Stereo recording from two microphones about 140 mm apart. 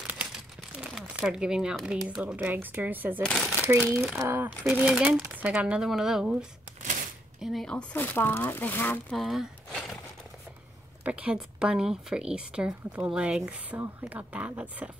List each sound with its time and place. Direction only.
0.0 s a sound: 10° right (ahead or behind)
2.0 s a woman's voice: 10° right (ahead or behind)
3.2 s speech: 5° left (ahead or behind)
3.6 s a woman's voice: 15° right (ahead or behind)
7.3 s speech: centre (ahead or behind)
7.9 s speech: 15° left (ahead or behind)
9.1 s a sound: centre (ahead or behind)
11.1 s a woman's voice: 10° right (ahead or behind)